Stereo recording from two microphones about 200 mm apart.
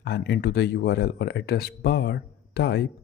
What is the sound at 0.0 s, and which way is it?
Speech, 55° left (ahead or behind).